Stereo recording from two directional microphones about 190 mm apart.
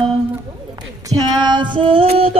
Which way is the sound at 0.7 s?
20° right (ahead or behind).